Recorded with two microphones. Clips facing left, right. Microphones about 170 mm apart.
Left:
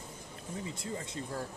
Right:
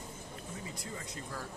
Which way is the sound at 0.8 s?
30° left (ahead or behind).